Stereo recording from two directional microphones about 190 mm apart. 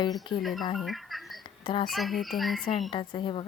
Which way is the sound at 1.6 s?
25° left (ahead or behind).